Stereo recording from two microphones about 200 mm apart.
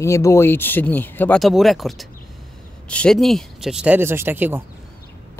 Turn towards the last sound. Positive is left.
turn(degrees=-10)  # may be behind; listen again after turning